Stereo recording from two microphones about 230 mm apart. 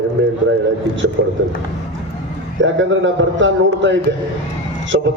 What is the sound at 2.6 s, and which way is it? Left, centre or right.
A man's voice, right.